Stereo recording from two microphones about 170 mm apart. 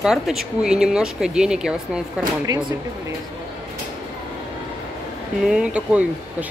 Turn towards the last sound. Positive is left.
turn(degrees=-5)  # may be behind; listen again after turning